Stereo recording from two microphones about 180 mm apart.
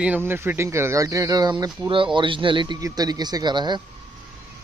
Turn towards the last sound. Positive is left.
turn(degrees=-25)  # may be behind; listen again after turning